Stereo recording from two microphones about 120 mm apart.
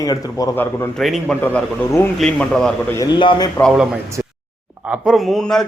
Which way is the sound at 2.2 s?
10° left (ahead or behind).